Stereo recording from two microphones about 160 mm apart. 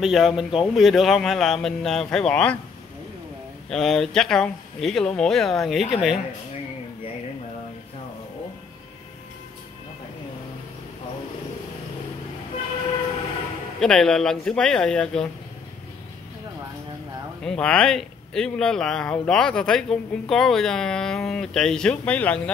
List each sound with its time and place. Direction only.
0.0 s speech: centre (ahead or behind)
3.7 s speech: centre (ahead or behind)
13.7 s speech: 5° left (ahead or behind)
17.4 s speech: 5° left (ahead or behind)